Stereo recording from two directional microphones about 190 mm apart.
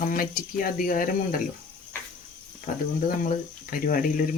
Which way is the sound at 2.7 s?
45° left (ahead or behind).